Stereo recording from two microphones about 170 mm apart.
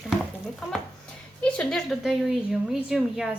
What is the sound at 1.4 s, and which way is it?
A woman's voice, 5° left (ahead or behind).